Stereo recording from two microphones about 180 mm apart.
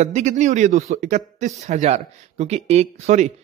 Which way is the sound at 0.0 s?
40° right (ahead or behind).